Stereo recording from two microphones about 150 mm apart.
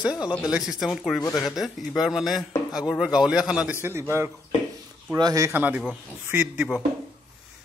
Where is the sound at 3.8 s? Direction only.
15° right (ahead or behind).